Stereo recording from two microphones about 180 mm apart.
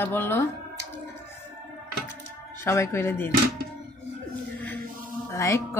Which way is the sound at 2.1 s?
15° left (ahead or behind).